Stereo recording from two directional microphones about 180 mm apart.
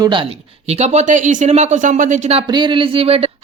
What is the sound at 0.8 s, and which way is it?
Speech, 40° right (ahead or behind).